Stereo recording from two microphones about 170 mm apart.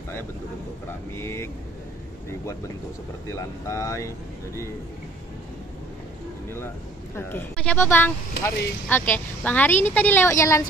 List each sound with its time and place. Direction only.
1.1 s speech: 15° left (ahead or behind)
3.3 s speech: 15° left (ahead or behind)
7.2 s speech: 10° left (ahead or behind)